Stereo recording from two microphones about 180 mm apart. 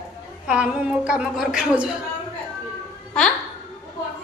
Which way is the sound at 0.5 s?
5° right (ahead or behind).